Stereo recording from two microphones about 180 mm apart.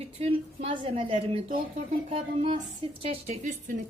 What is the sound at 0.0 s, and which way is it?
A woman's voice, 35° right (ahead or behind).